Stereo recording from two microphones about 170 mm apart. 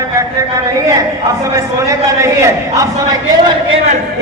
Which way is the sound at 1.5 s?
20° right (ahead or behind).